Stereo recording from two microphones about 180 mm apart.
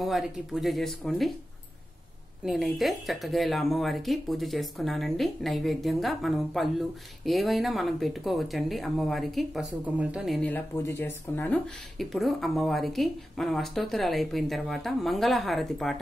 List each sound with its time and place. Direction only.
0.0 s speech: centre (ahead or behind)
2.4 s speech: centre (ahead or behind)